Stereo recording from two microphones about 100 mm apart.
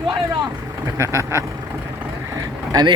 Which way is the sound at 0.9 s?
30° right (ahead or behind).